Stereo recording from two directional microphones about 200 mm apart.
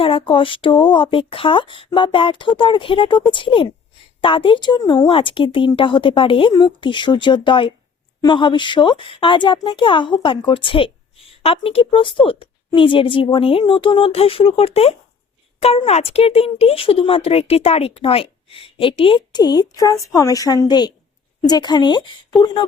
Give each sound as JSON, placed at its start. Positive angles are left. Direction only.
{"t": 0.0, "sound": "speech", "side_deg": 25}